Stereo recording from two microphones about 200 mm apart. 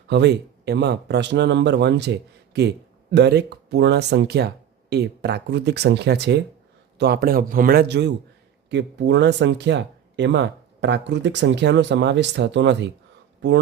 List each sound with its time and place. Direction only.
0.1 s a man's voice: 60° right (ahead or behind)